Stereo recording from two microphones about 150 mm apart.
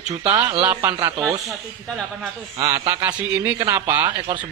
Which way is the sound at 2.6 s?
20° right (ahead or behind).